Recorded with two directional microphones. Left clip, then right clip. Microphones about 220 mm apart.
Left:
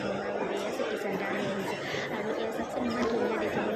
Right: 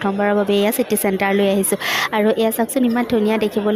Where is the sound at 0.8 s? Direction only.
50° right (ahead or behind).